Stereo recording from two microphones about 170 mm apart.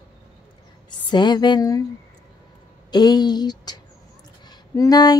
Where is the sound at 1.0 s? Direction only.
25° left (ahead or behind).